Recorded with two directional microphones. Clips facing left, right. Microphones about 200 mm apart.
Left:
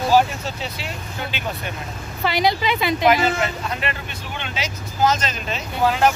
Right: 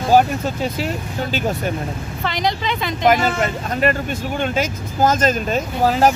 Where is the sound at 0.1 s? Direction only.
50° right (ahead or behind).